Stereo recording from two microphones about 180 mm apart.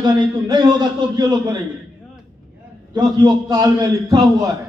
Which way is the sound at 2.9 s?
20° right (ahead or behind).